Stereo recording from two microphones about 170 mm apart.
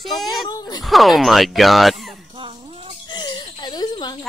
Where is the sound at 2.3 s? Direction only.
30° right (ahead or behind).